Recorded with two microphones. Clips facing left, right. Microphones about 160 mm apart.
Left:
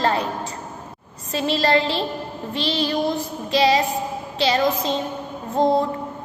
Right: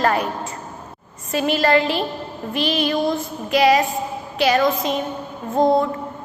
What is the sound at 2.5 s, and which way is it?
Child singing, 30° left (ahead or behind).